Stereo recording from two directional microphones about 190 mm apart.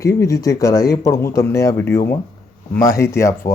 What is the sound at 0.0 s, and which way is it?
Speech, 15° left (ahead or behind).